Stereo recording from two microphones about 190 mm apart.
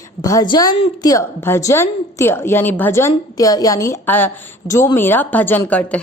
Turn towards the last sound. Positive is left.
turn(degrees=5)  # may be behind; listen again after turning